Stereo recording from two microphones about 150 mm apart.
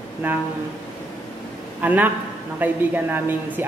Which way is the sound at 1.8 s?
10° right (ahead or behind).